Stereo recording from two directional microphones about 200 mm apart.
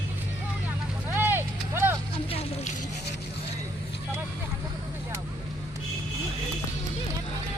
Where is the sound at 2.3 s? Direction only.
30° left (ahead or behind).